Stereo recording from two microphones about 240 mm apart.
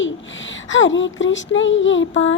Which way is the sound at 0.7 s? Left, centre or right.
Left.